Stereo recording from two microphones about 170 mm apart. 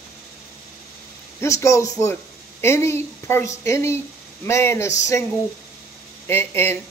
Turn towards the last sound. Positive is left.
turn(degrees=15)  # may be behind; listen again after turning